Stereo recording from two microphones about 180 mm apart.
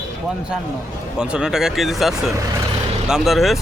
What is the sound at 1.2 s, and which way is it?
Speech, 5° right (ahead or behind).